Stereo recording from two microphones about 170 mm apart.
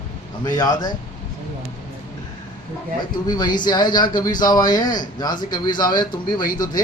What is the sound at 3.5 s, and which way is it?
A man's voice, 25° left (ahead or behind).